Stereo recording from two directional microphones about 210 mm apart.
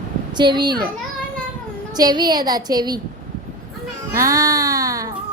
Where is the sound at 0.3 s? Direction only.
20° right (ahead or behind).